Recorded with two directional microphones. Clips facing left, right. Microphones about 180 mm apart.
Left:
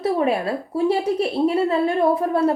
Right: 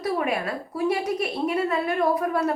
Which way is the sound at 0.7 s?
30° left (ahead or behind).